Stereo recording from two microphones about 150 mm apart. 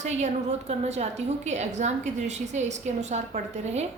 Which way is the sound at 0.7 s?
50° right (ahead or behind).